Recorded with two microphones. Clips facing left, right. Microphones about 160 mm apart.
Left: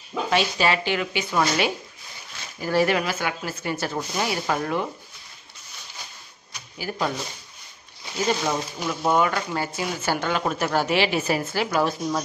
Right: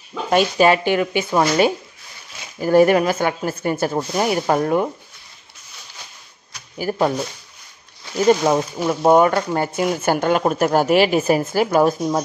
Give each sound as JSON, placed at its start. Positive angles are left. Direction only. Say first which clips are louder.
{"t": 0.3, "sound": "speech", "louder": "right 8 dB", "side_deg": -50}
{"t": 2.6, "sound": "speech", "louder": "right 8 dB", "side_deg": -45}
{"t": 6.8, "sound": "speech", "louder": "right 8 dB", "side_deg": -45}
{"t": 8.3, "sound": "speech", "louder": "right 10 dB", "side_deg": -45}